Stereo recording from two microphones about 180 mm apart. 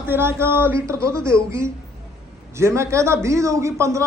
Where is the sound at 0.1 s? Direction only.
10° right (ahead or behind).